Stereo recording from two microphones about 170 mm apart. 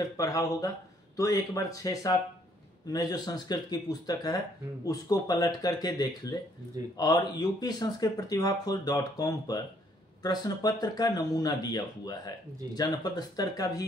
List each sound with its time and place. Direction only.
0.2 s speech: 20° left (ahead or behind)